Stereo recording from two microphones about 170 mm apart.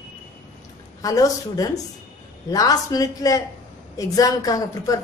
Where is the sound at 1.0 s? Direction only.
20° left (ahead or behind).